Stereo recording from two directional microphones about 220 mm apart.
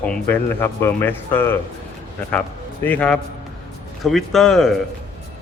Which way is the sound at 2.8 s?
5° left (ahead or behind).